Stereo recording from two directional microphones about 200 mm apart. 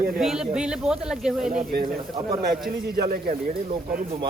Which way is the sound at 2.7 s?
50° right (ahead or behind).